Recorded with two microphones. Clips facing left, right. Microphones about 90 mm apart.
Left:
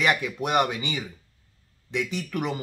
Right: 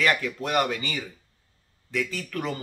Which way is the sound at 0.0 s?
15° left (ahead or behind).